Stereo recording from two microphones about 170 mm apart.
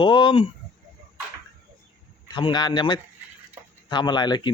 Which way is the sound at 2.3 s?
25° left (ahead or behind).